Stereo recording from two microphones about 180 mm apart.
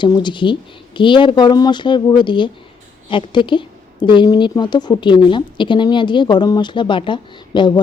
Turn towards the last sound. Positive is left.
turn(degrees=25)  # may be behind; listen again after turning